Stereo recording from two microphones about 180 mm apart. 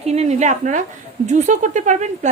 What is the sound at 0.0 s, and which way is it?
A woman's voice, 35° right (ahead or behind).